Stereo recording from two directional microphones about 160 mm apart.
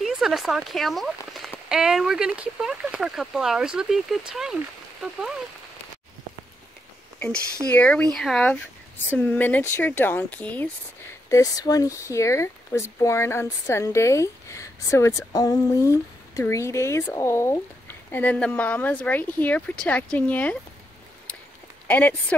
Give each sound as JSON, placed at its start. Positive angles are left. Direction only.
{"t": 0.0, "sound": "speech", "side_deg": 0}
{"t": 7.7, "sound": "speech", "side_deg": 10}
{"t": 11.2, "sound": "speech", "side_deg": 20}
{"t": 21.8, "sound": "speech", "side_deg": 10}